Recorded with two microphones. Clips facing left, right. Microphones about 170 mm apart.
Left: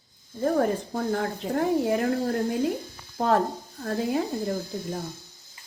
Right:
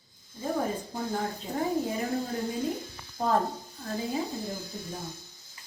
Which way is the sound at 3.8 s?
70° left (ahead or behind).